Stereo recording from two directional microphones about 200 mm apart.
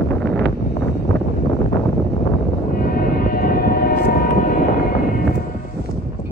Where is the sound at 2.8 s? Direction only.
45° left (ahead or behind).